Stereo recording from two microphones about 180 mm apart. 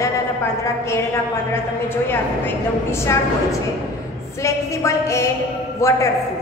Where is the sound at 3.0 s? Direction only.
15° left (ahead or behind).